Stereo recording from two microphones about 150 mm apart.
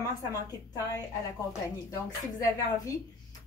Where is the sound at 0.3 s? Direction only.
25° left (ahead or behind).